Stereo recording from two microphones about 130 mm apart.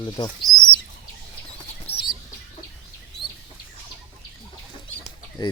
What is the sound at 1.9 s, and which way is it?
Bird, 50° left (ahead or behind).